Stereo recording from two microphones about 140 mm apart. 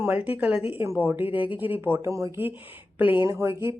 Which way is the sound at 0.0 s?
10° right (ahead or behind).